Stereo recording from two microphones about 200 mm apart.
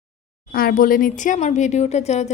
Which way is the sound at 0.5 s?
45° left (ahead or behind).